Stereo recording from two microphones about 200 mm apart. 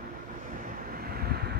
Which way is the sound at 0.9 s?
50° right (ahead or behind).